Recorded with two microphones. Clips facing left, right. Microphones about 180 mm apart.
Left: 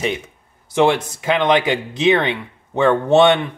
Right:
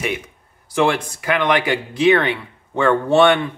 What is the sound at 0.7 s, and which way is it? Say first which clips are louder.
Speech: left 2 dB; 20° left (ahead or behind).